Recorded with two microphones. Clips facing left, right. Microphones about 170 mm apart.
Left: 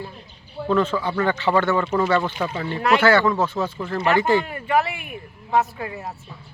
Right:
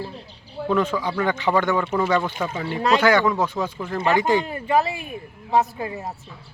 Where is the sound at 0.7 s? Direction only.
10° right (ahead or behind).